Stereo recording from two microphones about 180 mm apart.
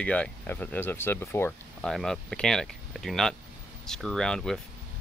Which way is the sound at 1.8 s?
Centre (ahead or behind).